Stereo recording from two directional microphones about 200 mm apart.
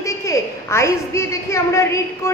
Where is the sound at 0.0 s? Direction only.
15° left (ahead or behind).